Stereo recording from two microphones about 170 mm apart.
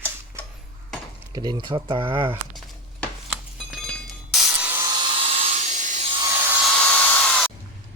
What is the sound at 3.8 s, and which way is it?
Tools, centre (ahead or behind).